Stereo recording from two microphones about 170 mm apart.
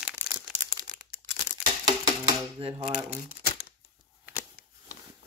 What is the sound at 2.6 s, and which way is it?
Speech, 30° right (ahead or behind).